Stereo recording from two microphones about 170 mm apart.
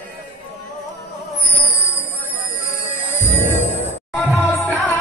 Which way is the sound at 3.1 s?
45° left (ahead or behind).